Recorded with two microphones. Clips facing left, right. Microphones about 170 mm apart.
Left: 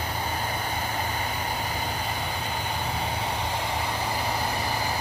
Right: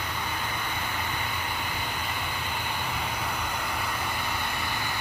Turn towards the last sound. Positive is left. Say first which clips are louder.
# left 4 dB
turn(degrees=35)  # may be behind; listen again after turning